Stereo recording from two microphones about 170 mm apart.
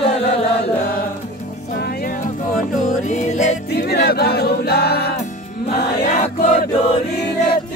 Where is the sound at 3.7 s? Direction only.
70° left (ahead or behind).